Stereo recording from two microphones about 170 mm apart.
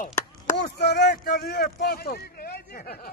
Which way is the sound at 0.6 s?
70° left (ahead or behind).